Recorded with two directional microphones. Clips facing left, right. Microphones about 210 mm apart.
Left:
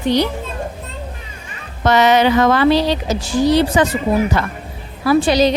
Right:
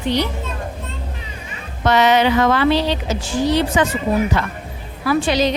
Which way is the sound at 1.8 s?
45° left (ahead or behind).